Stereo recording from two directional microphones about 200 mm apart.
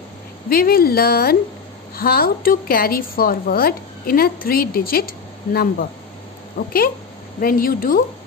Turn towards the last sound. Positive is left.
turn(degrees=45)  # may be behind; listen again after turning